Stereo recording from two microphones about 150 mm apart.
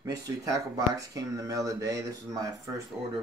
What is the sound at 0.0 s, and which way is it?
Speech, 25° right (ahead or behind).